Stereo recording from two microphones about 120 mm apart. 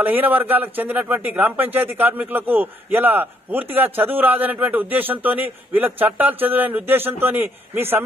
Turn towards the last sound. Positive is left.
turn(degrees=-15)  # may be behind; listen again after turning